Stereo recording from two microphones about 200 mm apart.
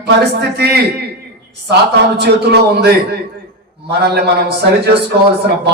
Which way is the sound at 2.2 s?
55° right (ahead or behind).